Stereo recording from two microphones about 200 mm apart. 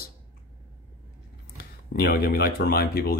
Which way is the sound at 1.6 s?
50° left (ahead or behind).